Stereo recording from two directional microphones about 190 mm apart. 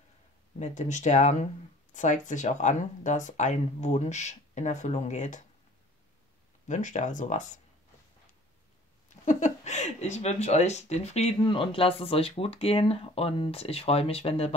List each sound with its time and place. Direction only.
0.6 s speech: 40° left (ahead or behind)
6.7 s speech: 40° left (ahead or behind)
9.2 s speech: 40° left (ahead or behind)